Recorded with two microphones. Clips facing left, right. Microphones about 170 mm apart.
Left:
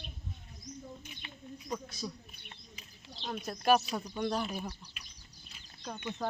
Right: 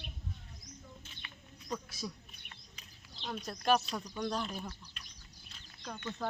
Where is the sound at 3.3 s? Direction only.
5° left (ahead or behind).